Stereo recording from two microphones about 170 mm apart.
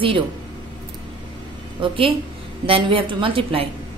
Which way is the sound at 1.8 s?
30° right (ahead or behind).